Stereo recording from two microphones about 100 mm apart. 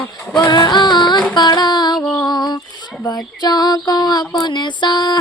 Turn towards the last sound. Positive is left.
turn(degrees=50)  # may be behind; listen again after turning